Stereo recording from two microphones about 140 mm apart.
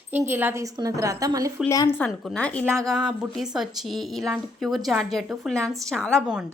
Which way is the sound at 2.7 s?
25° right (ahead or behind).